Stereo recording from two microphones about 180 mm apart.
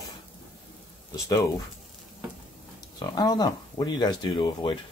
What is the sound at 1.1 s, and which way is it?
Speech, 15° left (ahead or behind).